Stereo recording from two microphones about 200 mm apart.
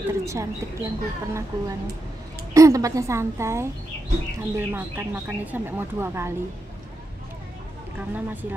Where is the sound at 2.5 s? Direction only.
15° right (ahead or behind).